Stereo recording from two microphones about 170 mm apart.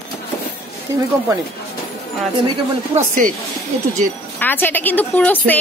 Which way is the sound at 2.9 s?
50° right (ahead or behind).